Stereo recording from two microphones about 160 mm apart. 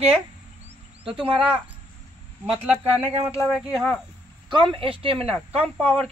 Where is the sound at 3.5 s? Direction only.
Centre (ahead or behind).